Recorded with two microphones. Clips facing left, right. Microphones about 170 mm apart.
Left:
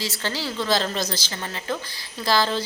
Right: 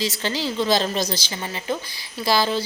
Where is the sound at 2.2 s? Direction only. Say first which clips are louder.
Right 1 dB; 10° right (ahead or behind).